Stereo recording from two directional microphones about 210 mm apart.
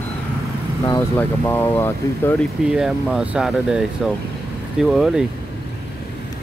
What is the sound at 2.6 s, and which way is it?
Speech, 5° right (ahead or behind).